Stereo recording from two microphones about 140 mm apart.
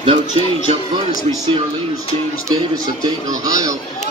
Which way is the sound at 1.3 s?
45° right (ahead or behind).